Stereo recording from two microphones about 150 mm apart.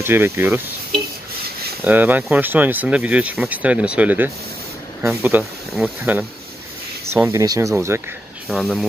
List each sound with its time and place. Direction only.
0.0 s speech: 15° right (ahead or behind)
1.9 s speech: 10° right (ahead or behind)
8.5 s speech: centre (ahead or behind)